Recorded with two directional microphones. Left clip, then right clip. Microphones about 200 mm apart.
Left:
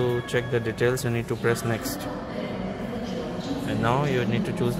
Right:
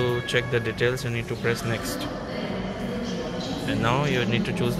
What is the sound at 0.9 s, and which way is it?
Speech, 25° left (ahead or behind).